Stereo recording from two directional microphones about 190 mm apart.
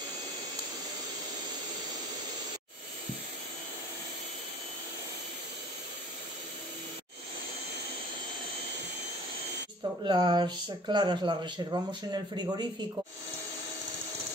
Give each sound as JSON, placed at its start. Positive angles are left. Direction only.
{"t": 10.0, "sound": "speech", "side_deg": -25}